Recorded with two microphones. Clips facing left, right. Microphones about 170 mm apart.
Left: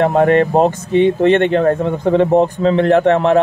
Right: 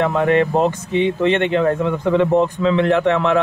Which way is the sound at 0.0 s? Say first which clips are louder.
Left 4 dB; 45° left (ahead or behind).